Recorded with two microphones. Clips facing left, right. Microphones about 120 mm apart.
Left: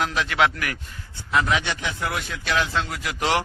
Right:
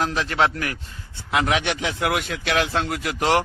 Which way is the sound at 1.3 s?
70° right (ahead or behind).